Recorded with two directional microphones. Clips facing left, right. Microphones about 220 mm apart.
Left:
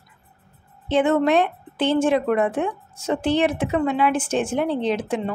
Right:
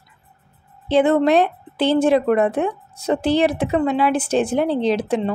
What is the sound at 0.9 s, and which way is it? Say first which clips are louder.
A woman's voice: right 3 dB; 35° right (ahead or behind).